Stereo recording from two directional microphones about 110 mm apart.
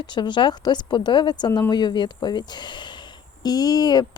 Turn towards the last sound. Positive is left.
turn(degrees=35)  # may be behind; listen again after turning